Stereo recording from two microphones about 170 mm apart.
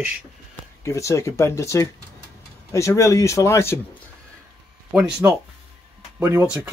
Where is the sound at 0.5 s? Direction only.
15° left (ahead or behind).